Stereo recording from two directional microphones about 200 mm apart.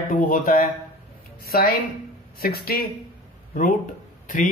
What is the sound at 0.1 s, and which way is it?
Speech, 40° left (ahead or behind).